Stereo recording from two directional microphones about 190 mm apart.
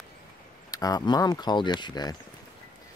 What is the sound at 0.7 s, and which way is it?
Speech, 20° left (ahead or behind).